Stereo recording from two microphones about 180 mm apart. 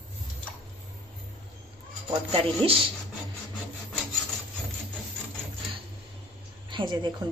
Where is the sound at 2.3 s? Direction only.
30° right (ahead or behind).